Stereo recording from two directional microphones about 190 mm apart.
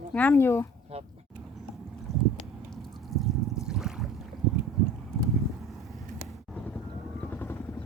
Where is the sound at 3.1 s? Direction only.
Centre (ahead or behind).